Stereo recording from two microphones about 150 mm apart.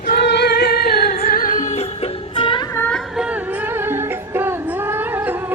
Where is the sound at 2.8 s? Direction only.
10° left (ahead or behind).